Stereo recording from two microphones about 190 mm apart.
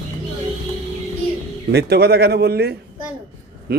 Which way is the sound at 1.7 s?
60° right (ahead or behind).